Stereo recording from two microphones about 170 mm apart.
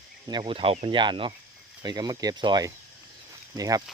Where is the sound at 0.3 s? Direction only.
30° right (ahead or behind).